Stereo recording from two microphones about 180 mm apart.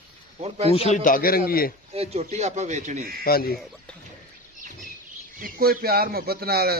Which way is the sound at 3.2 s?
55° left (ahead or behind).